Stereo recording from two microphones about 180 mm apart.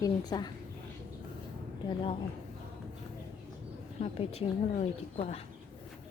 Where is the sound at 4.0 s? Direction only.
35° left (ahead or behind).